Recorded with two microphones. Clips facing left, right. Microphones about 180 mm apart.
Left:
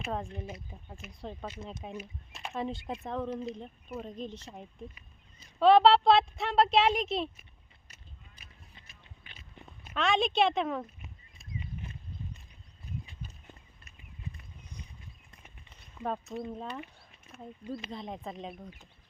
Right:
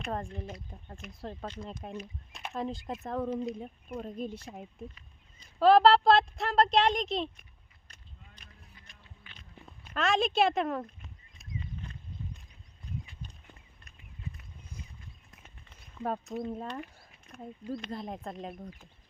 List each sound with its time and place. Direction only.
0.0 s speech: 5° left (ahead or behind)
4.9 s speech: centre (ahead or behind)
8.4 s vehicle: 10° left (ahead or behind)
9.6 s speech: centre (ahead or behind)
11.6 s a sound: 15° left (ahead or behind)
15.4 s a sound: centre (ahead or behind)
16.2 s speech: centre (ahead or behind)